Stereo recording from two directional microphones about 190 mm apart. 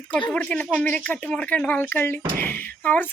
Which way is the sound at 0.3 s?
5° left (ahead or behind).